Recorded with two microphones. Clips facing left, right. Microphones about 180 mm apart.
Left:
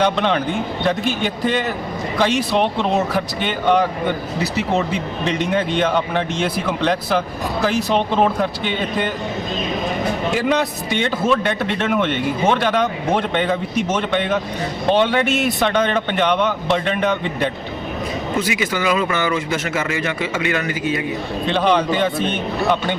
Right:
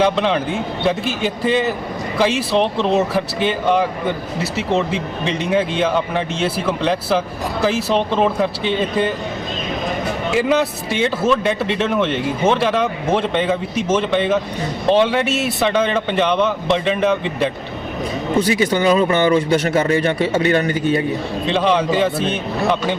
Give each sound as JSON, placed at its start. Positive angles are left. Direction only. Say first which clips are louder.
{"t": 0.0, "sound": "speech", "louder": "right 1 dB", "side_deg": 0}
{"t": 5.2, "sound": "speech", "louder": "right 1 dB", "side_deg": 0}
{"t": 10.3, "sound": "speech", "louder": "right 5 dB", "side_deg": -5}
{"t": 18.3, "sound": "speech", "louder": "right 6 dB", "side_deg": -30}
{"t": 21.4, "sound": "speech", "louder": "even", "side_deg": 0}